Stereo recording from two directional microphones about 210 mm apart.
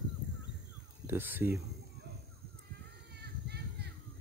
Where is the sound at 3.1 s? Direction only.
50° right (ahead or behind).